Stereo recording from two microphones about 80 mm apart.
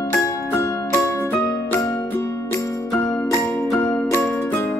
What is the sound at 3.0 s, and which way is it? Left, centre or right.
Music, centre.